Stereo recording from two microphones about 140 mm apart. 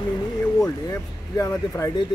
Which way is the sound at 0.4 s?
15° left (ahead or behind).